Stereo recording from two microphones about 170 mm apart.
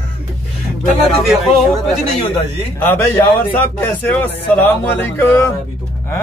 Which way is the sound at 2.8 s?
10° left (ahead or behind).